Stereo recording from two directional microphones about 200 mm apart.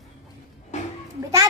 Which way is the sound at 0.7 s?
35° left (ahead or behind).